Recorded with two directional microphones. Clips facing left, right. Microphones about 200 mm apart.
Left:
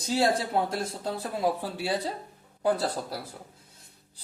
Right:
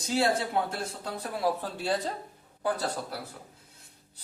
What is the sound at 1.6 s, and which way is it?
Speech, 10° left (ahead or behind).